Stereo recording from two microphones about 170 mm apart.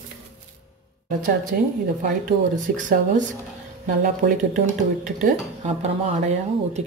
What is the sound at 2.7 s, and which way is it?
A woman's voice, 50° right (ahead or behind).